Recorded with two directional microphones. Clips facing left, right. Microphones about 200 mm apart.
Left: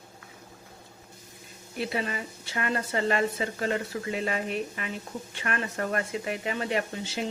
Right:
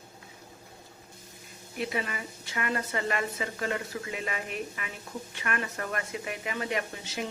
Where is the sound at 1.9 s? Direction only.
30° left (ahead or behind).